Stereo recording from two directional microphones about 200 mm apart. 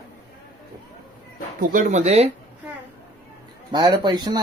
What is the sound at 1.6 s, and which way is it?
Speech, 40° right (ahead or behind).